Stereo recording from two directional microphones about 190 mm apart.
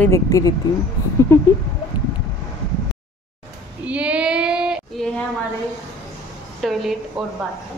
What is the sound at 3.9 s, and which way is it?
Child singing, 5° right (ahead or behind).